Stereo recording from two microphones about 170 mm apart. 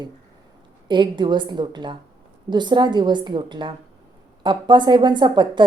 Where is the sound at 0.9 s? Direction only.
25° right (ahead or behind).